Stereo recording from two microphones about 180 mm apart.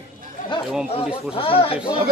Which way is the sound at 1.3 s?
30° left (ahead or behind).